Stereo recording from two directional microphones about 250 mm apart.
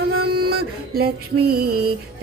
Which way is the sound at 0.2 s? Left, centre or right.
Right.